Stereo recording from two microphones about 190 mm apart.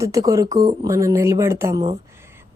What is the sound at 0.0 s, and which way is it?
A woman's voice, 15° right (ahead or behind).